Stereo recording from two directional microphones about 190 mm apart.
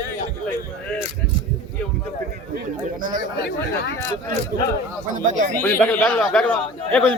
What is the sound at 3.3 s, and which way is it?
Speech, 60° left (ahead or behind).